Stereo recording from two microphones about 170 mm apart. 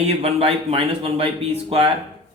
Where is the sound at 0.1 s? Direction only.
35° right (ahead or behind).